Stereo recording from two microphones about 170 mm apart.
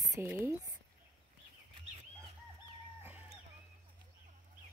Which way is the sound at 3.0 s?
10° right (ahead or behind).